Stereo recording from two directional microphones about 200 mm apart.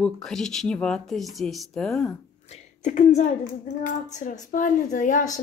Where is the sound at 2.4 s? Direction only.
35° left (ahead or behind).